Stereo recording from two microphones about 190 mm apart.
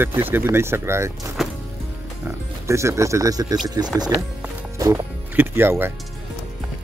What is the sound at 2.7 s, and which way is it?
Speech, 15° right (ahead or behind).